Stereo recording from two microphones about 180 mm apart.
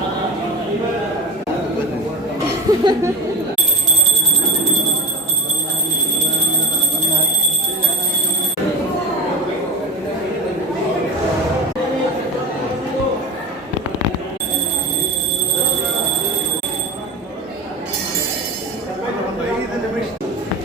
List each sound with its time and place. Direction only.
2.7 s laughter: 20° right (ahead or behind)